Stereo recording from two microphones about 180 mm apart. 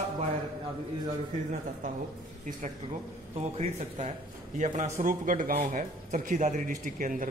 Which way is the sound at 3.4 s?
35° right (ahead or behind).